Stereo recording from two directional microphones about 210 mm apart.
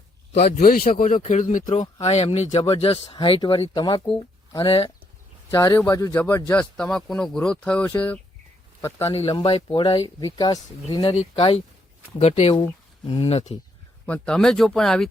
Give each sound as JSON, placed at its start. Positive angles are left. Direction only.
{"t": 0.6, "sound": "speech", "side_deg": 45}
{"t": 5.5, "sound": "speech", "side_deg": 15}
{"t": 9.1, "sound": "speech", "side_deg": 25}
{"t": 14.1, "sound": "speech", "side_deg": 5}